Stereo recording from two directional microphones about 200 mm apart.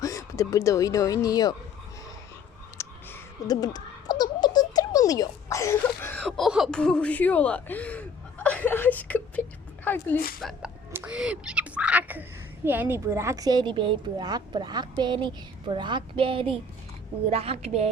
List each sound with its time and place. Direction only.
0.0 s speech: 15° left (ahead or behind)
2.7 s speech: 15° left (ahead or behind)
10.4 s a woman's voice: 5° right (ahead or behind); by 17.8 s 30° right (ahead or behind)